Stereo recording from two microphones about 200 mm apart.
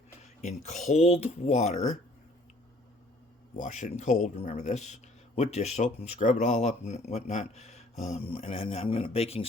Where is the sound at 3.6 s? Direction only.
35° left (ahead or behind).